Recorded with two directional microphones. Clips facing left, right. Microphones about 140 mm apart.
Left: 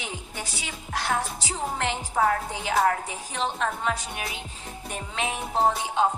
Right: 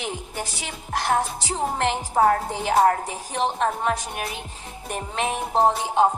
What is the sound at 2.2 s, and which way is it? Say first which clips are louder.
A woman's voice: right 5 dB; 40° right (ahead or behind).